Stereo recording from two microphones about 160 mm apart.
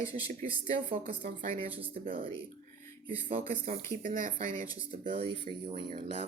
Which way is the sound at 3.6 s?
55° right (ahead or behind).